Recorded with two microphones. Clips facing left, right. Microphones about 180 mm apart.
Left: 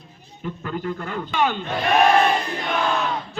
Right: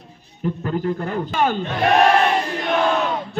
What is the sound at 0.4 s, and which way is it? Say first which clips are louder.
A man's voice: right 5 dB; 40° right (ahead or behind).